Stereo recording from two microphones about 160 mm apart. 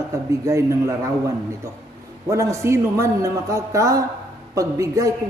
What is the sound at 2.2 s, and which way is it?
A man's voice, 20° right (ahead or behind).